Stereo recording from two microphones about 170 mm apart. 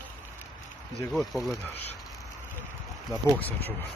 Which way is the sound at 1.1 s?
Centre (ahead or behind).